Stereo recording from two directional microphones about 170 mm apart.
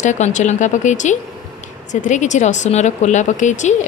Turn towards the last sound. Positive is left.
turn(degrees=45)  # may be behind; listen again after turning